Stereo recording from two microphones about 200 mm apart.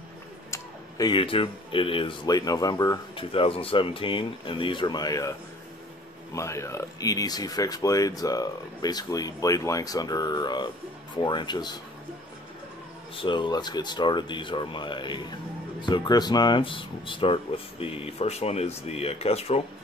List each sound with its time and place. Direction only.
0.5 s speech: 20° left (ahead or behind)
6.3 s speech: 15° left (ahead or behind)
13.1 s speech: 25° left (ahead or behind)